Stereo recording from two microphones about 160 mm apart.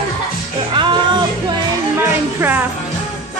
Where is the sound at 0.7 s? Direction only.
30° right (ahead or behind).